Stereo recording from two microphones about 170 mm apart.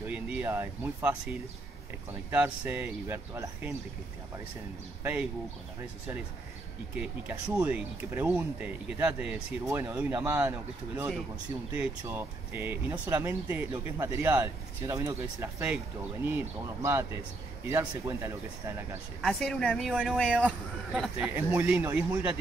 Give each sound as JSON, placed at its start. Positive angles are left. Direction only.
{"t": 0.1, "sound": "speech", "side_deg": -10}
{"t": 2.3, "sound": "speech", "side_deg": -10}
{"t": 5.0, "sound": "speech", "side_deg": -15}
{"t": 7.0, "sound": "speech", "side_deg": -5}
{"t": 19.2, "sound": "speech", "side_deg": 5}
{"t": 20.9, "sound": "speech", "side_deg": -5}